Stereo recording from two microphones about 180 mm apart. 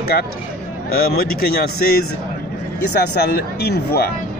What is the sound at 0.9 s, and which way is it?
A man's voice, 55° left (ahead or behind).